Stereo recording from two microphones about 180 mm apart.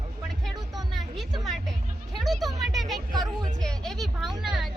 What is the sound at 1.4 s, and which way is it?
Speech, centre (ahead or behind).